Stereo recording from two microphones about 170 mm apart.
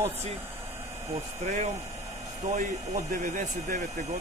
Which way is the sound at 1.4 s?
40° right (ahead or behind).